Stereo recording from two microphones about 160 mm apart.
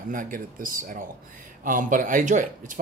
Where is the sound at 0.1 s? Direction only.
60° right (ahead or behind).